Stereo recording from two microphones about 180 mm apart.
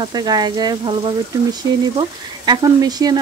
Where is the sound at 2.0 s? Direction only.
25° right (ahead or behind).